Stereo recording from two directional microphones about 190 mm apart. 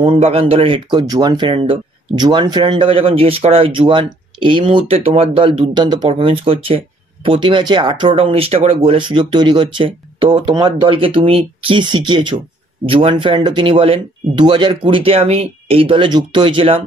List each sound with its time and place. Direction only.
0.0 s speech: 30° right (ahead or behind)